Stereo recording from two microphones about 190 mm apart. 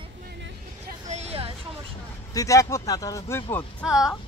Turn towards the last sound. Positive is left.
turn(degrees=0)  # may be behind; listen again after turning